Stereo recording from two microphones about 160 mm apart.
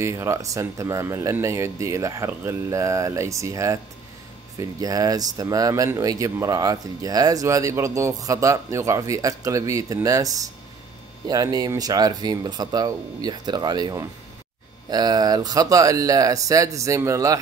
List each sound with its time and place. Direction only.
0.0 s speech: 15° right (ahead or behind)